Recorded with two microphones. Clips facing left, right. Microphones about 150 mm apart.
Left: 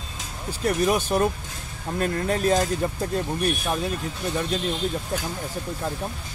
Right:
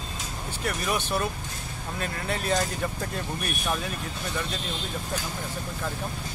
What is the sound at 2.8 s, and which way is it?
Speech, 25° left (ahead or behind).